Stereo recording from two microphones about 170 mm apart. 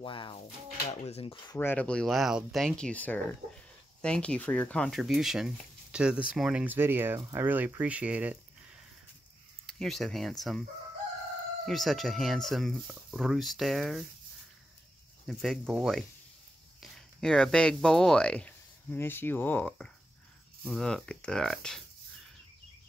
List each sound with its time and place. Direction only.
0.0 s speech: 30° left (ahead or behind)
1.6 s speech: 10° left (ahead or behind); by 8.4 s 10° right (ahead or behind)
9.7 s speech: centre (ahead or behind)
11.6 s speech: centre (ahead or behind)
15.2 s speech: centre (ahead or behind)